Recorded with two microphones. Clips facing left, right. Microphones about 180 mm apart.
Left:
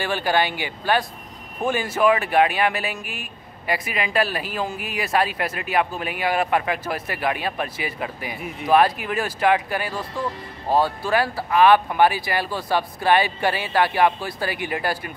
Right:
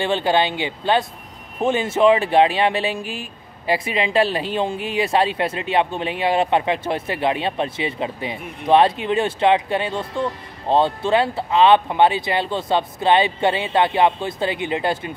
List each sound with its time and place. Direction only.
0.0 s speech: 25° right (ahead or behind)
8.4 s speech: centre (ahead or behind)
8.6 s speech: 25° right (ahead or behind)